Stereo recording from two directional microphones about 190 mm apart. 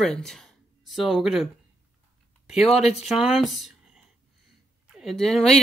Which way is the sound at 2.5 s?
Centre (ahead or behind).